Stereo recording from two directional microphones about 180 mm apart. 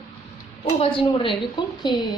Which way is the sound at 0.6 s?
30° left (ahead or behind).